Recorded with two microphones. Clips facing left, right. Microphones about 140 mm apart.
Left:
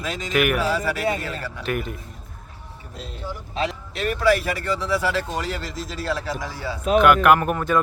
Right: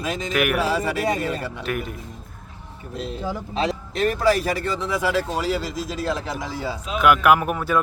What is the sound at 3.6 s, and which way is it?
Speech, 40° right (ahead or behind).